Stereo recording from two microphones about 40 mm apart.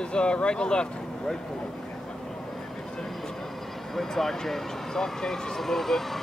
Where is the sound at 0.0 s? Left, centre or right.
Left.